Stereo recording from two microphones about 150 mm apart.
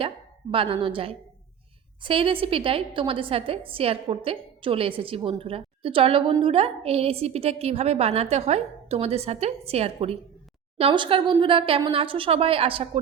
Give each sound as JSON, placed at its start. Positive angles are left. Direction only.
{"t": 0.5, "sound": "a woman's voice", "side_deg": -35}